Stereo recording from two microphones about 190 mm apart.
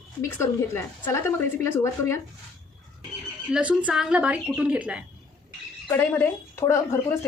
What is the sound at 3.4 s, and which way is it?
A woman's voice, 5° right (ahead or behind).